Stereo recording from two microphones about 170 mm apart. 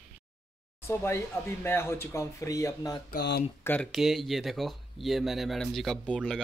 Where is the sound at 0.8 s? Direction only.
15° left (ahead or behind).